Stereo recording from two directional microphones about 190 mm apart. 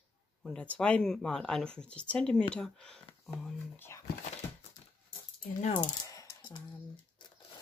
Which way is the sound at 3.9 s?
15° left (ahead or behind).